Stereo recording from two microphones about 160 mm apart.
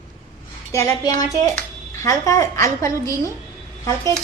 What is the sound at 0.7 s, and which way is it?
A woman's voice, 20° left (ahead or behind).